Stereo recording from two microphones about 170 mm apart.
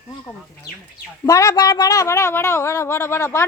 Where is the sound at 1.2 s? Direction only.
20° left (ahead or behind).